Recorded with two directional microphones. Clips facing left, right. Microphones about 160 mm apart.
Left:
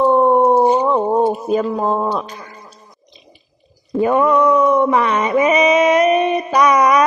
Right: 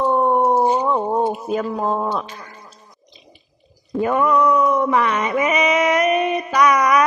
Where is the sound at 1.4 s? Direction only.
20° left (ahead or behind).